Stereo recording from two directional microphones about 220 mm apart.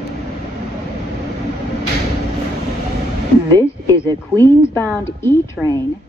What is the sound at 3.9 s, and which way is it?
Speech, 10° left (ahead or behind).